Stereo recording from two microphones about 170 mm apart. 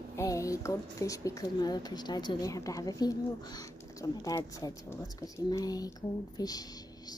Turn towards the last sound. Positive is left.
turn(degrees=20)  # may be behind; listen again after turning